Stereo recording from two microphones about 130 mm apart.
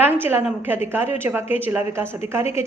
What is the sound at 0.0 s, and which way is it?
A woman's voice, 15° right (ahead or behind).